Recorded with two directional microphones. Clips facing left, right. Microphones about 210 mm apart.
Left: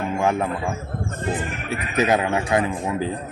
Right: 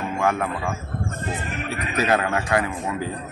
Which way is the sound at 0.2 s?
20° left (ahead or behind).